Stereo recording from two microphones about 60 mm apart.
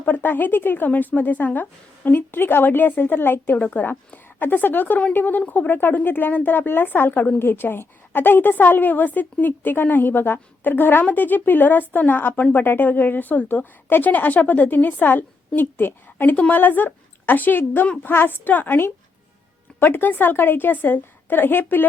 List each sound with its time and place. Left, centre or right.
0.0 s speech: left
16.3 s speech: left
16.6 s a woman's voice: left